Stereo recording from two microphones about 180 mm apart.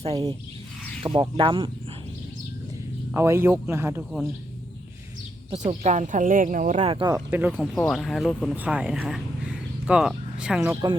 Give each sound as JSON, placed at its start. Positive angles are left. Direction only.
{"t": 1.0, "sound": "speech", "side_deg": -25}
{"t": 3.1, "sound": "a man's voice", "side_deg": -15}
{"t": 5.5, "sound": "speech", "side_deg": -35}
{"t": 6.9, "sound": "speech", "side_deg": -25}
{"t": 7.3, "sound": "a man's voice", "side_deg": -10}
{"t": 7.5, "sound": "speech", "side_deg": 5}